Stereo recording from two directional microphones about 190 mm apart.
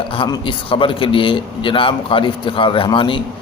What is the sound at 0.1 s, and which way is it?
A man's voice, 25° left (ahead or behind).